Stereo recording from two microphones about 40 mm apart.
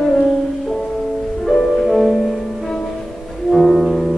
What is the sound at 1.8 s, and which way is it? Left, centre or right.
Music, centre.